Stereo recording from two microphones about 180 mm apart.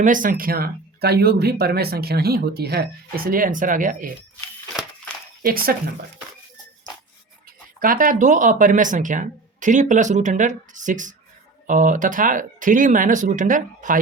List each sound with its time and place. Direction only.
0.0 s speech: 50° right (ahead or behind)
5.4 s speech: 55° right (ahead or behind)
7.8 s speech: 50° right (ahead or behind)